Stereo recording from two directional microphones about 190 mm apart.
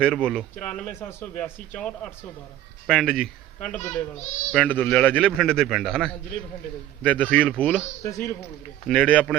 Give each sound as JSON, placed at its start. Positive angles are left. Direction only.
{"t": 0.0, "sound": "a man's voice", "side_deg": 5}
{"t": 8.0, "sound": "a man's voice", "side_deg": 15}
{"t": 8.9, "sound": "a man's voice", "side_deg": 5}